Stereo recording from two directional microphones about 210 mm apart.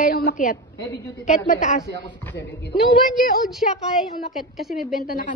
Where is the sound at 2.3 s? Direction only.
55° left (ahead or behind).